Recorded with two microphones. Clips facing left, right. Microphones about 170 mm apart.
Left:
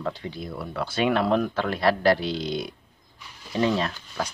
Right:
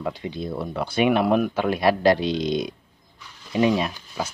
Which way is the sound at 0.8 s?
15° right (ahead or behind).